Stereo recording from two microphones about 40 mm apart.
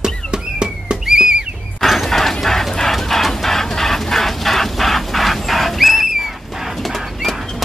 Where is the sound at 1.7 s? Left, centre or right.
Centre.